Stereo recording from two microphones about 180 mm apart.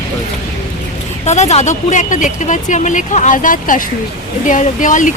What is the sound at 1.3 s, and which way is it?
A woman's voice, 40° left (ahead or behind).